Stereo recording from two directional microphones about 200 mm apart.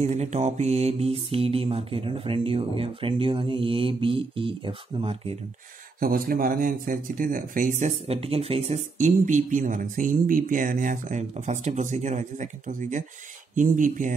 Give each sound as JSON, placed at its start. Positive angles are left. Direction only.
{"t": 0.0, "sound": "mantra", "side_deg": -35}
{"t": 5.9, "sound": "speech", "side_deg": -45}